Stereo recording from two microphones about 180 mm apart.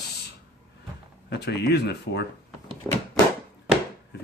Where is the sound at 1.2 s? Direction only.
65° left (ahead or behind).